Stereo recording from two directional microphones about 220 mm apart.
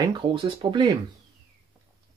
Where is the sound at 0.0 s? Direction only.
20° right (ahead or behind).